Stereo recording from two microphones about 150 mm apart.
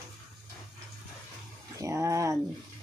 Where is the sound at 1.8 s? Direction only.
20° right (ahead or behind).